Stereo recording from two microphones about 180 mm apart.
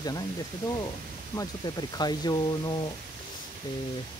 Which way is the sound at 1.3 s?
20° left (ahead or behind).